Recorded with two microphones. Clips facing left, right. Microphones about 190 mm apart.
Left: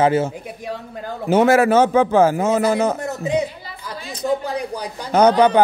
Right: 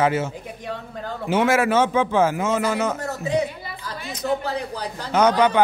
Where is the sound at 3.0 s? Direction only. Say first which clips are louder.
Left 2 dB; 20° left (ahead or behind).